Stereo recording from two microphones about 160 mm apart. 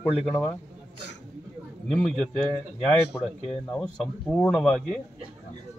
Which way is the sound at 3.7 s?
5° left (ahead or behind).